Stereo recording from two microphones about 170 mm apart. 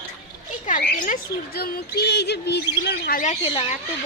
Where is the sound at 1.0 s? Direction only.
55° left (ahead or behind); by 3.2 s 75° left (ahead or behind).